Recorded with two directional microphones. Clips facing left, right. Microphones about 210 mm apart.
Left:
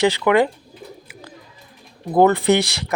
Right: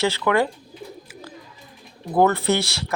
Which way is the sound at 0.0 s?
15° left (ahead or behind).